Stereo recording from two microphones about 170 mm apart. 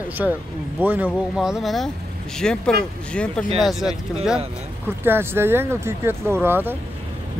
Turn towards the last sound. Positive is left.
turn(degrees=-10)  # may be behind; listen again after turning